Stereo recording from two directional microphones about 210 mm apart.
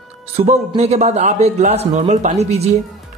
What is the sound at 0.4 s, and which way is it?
A man's voice, 30° right (ahead or behind).